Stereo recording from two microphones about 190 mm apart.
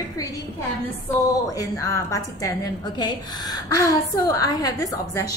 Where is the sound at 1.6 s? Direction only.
15° left (ahead or behind).